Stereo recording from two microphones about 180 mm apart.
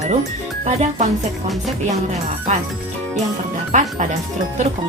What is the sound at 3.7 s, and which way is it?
Speech, 45° right (ahead or behind).